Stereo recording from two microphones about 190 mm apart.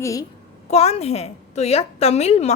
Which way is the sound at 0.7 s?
35° left (ahead or behind).